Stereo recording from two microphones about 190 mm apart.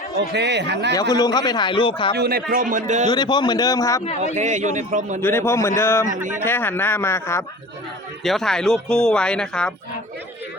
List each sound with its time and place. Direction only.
0.3 s speech: 65° right (ahead or behind)
1.1 s speech: 20° left (ahead or behind)
2.1 s a man's voice: 55° right (ahead or behind)
3.1 s speech: 20° left (ahead or behind)
4.4 s a man's voice: 40° right (ahead or behind)
5.2 s a man's voice: 15° left (ahead or behind)
8.2 s speech: centre (ahead or behind)